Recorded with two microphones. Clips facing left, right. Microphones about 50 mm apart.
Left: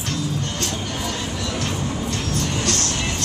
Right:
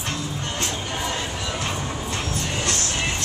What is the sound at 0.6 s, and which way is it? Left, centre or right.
Music, right.